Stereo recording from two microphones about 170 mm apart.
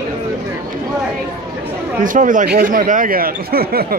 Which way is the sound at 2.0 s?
50° right (ahead or behind).